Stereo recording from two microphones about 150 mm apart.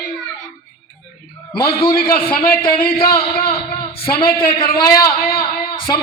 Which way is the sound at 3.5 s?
40° left (ahead or behind).